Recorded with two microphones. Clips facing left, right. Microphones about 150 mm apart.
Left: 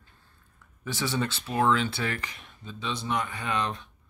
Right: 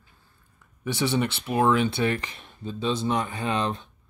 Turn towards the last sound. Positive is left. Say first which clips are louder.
# right 3 dB
turn(degrees=-30)  # may be behind; listen again after turning